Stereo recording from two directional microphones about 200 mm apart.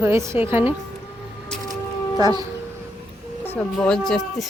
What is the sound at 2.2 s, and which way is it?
Speech, 20° right (ahead or behind).